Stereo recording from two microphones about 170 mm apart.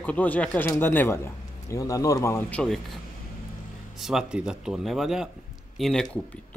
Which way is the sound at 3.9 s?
Centre (ahead or behind).